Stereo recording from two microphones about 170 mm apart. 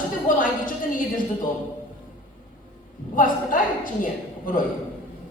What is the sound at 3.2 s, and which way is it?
A woman's voice, 55° left (ahead or behind).